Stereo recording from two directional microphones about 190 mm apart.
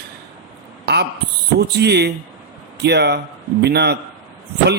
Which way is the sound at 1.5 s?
60° right (ahead or behind).